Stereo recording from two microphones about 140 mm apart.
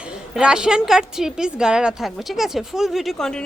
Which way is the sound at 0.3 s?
5° right (ahead or behind).